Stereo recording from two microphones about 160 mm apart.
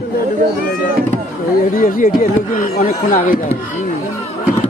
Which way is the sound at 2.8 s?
60° left (ahead or behind).